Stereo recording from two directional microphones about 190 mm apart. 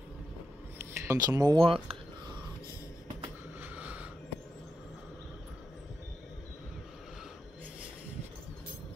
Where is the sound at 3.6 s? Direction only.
10° right (ahead or behind).